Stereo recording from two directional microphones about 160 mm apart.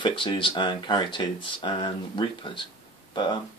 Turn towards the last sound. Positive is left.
turn(degrees=30)  # may be behind; listen again after turning